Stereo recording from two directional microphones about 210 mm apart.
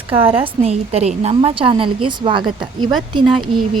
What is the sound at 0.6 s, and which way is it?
A woman's voice, 30° right (ahead or behind).